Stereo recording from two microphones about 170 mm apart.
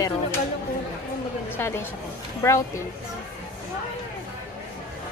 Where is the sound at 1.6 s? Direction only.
15° left (ahead or behind).